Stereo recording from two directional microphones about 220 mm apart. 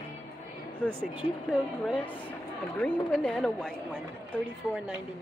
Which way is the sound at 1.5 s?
5° left (ahead or behind).